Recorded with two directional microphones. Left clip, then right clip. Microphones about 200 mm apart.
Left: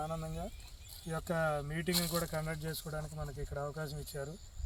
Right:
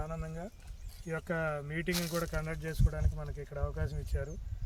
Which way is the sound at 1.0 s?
35° right (ahead or behind).